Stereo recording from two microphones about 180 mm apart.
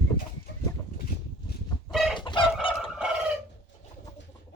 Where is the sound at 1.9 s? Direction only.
Centre (ahead or behind).